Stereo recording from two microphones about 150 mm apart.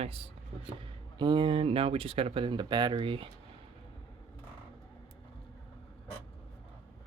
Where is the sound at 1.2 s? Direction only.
30° right (ahead or behind).